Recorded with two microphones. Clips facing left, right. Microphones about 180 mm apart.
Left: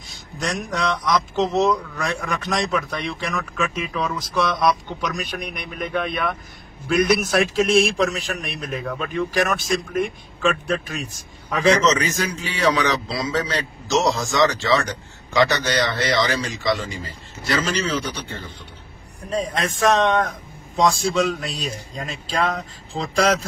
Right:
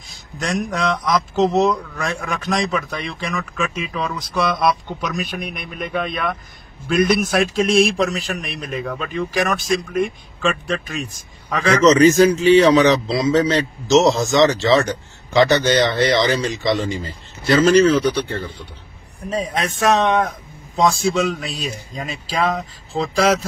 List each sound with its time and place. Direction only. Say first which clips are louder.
0.1 s speech: right 3 dB; centre (ahead or behind)
11.8 s a man's voice: right 10 dB; 35° right (ahead or behind)
17.6 s speech: right 11 dB; 55° right (ahead or behind)
19.2 s speech: right 1 dB; 5° right (ahead or behind)